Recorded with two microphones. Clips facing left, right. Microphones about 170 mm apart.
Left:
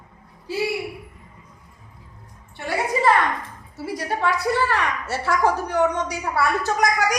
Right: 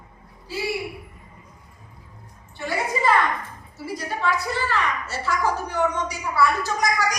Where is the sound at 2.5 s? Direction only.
65° left (ahead or behind).